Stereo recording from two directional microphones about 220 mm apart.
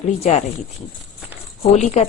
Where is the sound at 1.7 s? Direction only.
30° left (ahead or behind).